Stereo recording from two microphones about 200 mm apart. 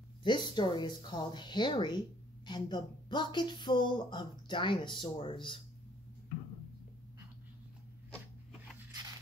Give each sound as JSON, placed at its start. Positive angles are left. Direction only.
{"t": 0.2, "sound": "speech", "side_deg": 25}